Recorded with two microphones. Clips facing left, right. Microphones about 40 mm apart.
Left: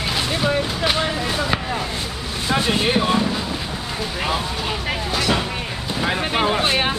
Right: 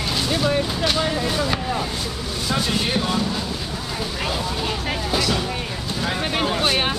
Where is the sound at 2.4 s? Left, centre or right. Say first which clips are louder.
Left 4 dB; left.